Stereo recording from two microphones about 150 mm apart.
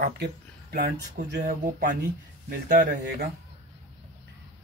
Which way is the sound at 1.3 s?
60° right (ahead or behind).